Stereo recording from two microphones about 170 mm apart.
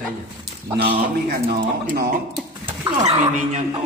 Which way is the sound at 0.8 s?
65° right (ahead or behind).